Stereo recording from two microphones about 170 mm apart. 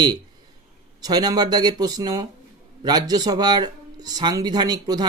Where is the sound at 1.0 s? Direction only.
25° right (ahead or behind).